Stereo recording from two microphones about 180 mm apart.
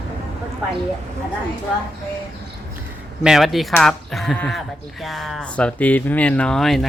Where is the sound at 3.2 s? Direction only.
Centre (ahead or behind).